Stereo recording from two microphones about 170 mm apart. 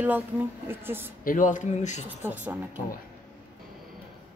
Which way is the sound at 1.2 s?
50° left (ahead or behind).